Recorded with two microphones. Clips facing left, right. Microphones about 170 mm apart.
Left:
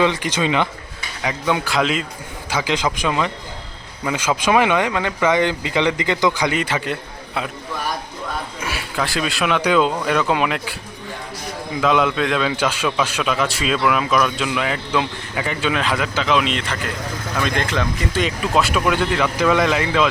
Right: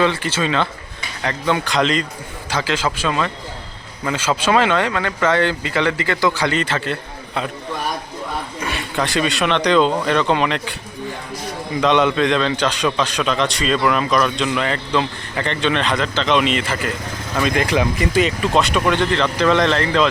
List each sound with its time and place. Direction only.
0.0 s speech: 15° left (ahead or behind)
8.6 s speech: 5° left (ahead or behind)
11.8 s a man's voice: centre (ahead or behind)
18.3 s speech: 5° left (ahead or behind)